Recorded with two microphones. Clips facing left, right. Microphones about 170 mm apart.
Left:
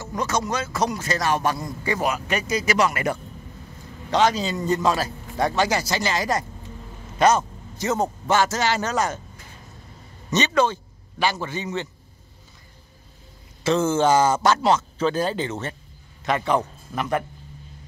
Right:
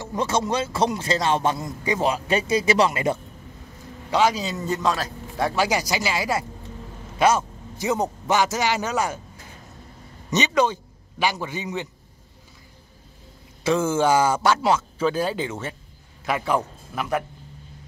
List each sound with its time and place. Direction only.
0.0 s speech: 30° right (ahead or behind)
2.0 s speech: 30° right (ahead or behind)
4.1 s a man's voice: 10° right (ahead or behind)
5.6 s speech: 10° right (ahead or behind)
10.3 s a man's voice: 15° right (ahead or behind)
13.7 s a man's voice: 10° right (ahead or behind)